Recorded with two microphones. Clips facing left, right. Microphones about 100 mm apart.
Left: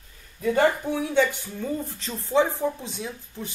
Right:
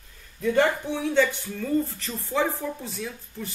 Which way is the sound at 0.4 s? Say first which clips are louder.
Left 1 dB; 5° left (ahead or behind).